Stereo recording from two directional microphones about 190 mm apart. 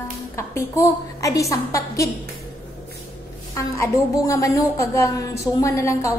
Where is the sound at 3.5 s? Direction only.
15° left (ahead or behind).